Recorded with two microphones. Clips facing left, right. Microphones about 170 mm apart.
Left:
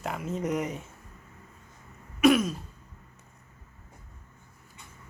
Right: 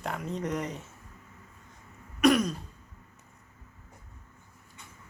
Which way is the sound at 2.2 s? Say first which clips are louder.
Left 2 dB; centre (ahead or behind).